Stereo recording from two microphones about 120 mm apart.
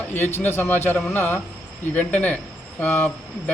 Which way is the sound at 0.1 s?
15° left (ahead or behind).